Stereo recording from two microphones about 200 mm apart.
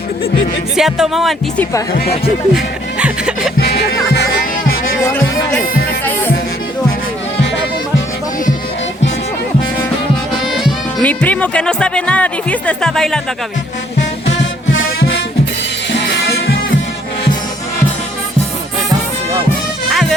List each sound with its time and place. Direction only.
0.8 s speech: centre (ahead or behind)
3.6 s music: 55° left (ahead or behind)
5.0 s speech: 10° left (ahead or behind)
10.4 s speech: centre (ahead or behind)
14.3 s music: 70° left (ahead or behind)
19.9 s music: centre (ahead or behind)